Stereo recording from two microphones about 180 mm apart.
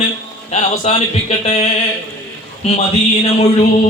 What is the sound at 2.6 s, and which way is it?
Speech, 35° left (ahead or behind).